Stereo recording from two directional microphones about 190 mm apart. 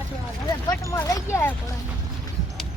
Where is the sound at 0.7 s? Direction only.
15° left (ahead or behind).